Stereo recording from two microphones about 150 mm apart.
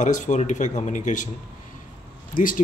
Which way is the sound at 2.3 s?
65° left (ahead or behind).